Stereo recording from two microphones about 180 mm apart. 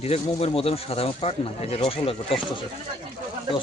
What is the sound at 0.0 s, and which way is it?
Speech, 35° left (ahead or behind).